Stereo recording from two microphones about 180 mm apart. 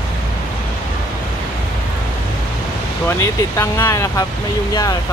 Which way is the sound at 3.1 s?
15° left (ahead or behind).